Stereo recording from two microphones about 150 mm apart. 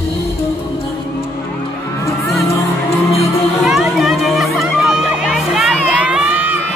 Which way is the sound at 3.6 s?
Centre (ahead or behind).